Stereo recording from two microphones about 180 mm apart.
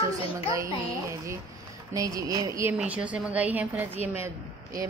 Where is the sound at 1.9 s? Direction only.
20° right (ahead or behind).